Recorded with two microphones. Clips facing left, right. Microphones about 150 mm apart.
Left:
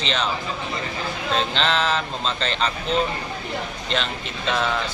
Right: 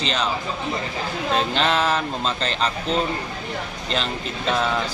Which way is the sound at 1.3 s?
45° right (ahead or behind).